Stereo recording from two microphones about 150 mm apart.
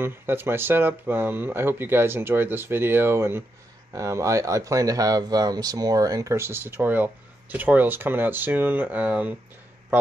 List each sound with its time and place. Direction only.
0.0 s speech: 15° right (ahead or behind)